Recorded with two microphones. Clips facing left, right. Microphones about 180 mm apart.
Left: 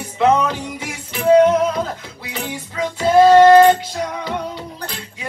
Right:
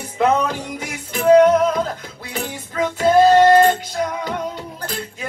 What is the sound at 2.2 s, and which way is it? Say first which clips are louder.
Music: even; 45° right (ahead or behind).